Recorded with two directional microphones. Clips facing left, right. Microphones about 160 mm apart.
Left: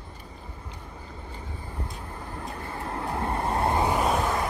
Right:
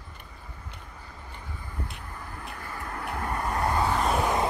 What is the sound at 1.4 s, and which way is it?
Vehicle, 30° left (ahead or behind).